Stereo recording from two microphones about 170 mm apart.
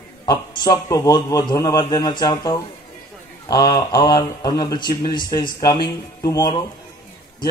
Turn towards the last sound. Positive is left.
turn(degrees=20)  # may be behind; listen again after turning